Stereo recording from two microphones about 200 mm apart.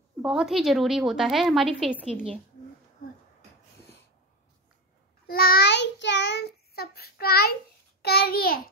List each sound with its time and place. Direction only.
0.2 s a woman's voice: 5° right (ahead or behind)
5.2 s child singing: 50° left (ahead or behind)
8.0 s a child's voice: 50° left (ahead or behind)